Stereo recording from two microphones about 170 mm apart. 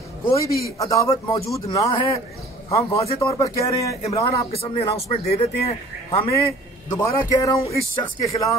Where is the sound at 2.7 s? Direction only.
30° left (ahead or behind).